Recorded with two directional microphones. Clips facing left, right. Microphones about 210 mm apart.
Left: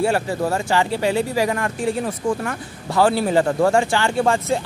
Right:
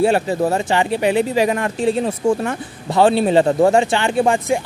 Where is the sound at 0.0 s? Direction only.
20° right (ahead or behind).